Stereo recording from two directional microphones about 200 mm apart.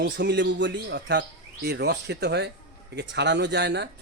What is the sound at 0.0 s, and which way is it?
Speech, 60° right (ahead or behind).